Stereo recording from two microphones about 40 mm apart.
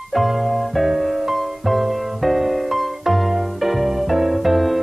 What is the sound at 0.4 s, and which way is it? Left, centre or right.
Music, centre.